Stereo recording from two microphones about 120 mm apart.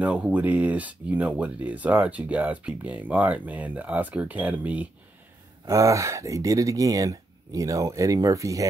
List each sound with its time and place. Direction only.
0.0 s speech: 10° right (ahead or behind)
5.7 s speech: 25° right (ahead or behind)